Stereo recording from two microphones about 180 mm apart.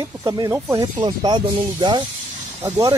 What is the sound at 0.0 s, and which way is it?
Speech, 20° right (ahead or behind).